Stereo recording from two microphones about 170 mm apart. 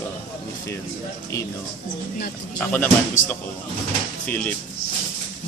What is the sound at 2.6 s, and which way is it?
Speech, 10° left (ahead or behind).